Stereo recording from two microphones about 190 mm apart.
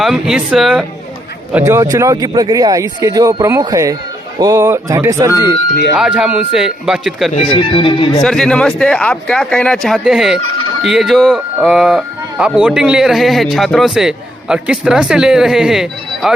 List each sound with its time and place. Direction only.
0.0 s speech: 5° right (ahead or behind)
1.5 s speech: 15° right (ahead or behind)
6.0 s speech: 5° right (ahead or behind)
7.5 s speech: 25° left (ahead or behind)
8.2 s speech: centre (ahead or behind)